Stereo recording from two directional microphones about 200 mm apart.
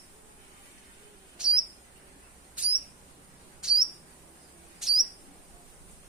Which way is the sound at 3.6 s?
5° right (ahead or behind).